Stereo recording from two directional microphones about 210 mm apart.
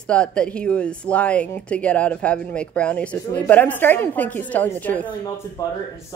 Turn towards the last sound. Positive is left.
turn(degrees=15)  # may be behind; listen again after turning